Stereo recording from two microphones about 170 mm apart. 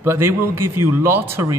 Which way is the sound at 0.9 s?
15° right (ahead or behind).